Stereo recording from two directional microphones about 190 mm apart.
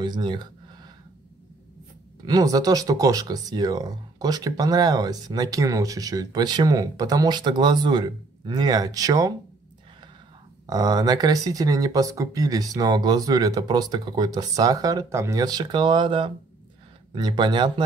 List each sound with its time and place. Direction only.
0.0 s speech: 25° right (ahead or behind)
2.2 s speech: 20° right (ahead or behind)
10.7 s speech: 20° right (ahead or behind)